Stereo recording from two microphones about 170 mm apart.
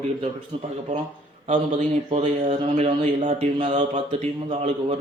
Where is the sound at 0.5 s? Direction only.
30° right (ahead or behind).